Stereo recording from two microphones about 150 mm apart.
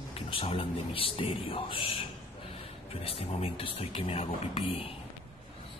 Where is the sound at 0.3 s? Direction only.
40° left (ahead or behind).